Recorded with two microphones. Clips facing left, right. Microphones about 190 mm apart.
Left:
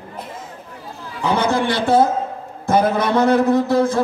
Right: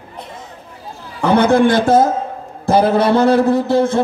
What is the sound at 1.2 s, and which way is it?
Speech, 60° right (ahead or behind).